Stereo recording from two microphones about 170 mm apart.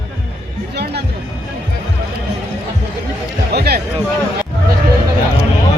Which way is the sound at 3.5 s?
70° right (ahead or behind).